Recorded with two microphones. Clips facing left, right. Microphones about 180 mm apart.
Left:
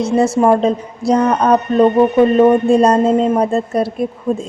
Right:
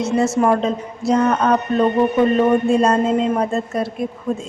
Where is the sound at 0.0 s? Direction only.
35° left (ahead or behind).